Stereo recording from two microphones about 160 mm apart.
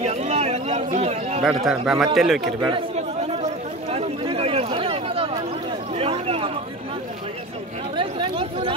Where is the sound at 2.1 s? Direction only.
Centre (ahead or behind).